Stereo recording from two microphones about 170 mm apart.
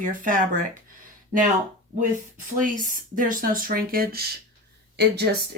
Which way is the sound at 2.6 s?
50° right (ahead or behind).